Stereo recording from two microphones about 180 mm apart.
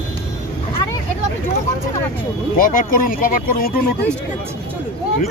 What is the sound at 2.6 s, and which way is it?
Speech, 50° left (ahead or behind).